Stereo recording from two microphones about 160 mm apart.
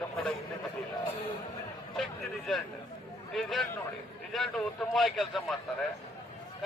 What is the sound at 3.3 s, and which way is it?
A man's voice, centre (ahead or behind).